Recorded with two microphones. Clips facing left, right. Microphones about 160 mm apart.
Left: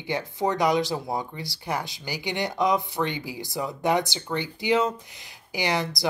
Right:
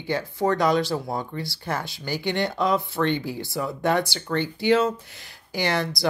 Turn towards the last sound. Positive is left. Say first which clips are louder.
# right 2 dB
turn(degrees=20)  # may be behind; listen again after turning